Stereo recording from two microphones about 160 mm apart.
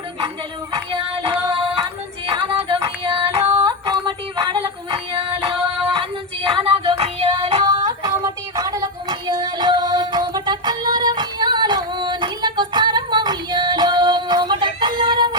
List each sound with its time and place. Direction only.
0.7 s child singing: 35° right (ahead or behind)
2.3 s music: 30° right (ahead or behind)
8.0 s music: 20° right (ahead or behind)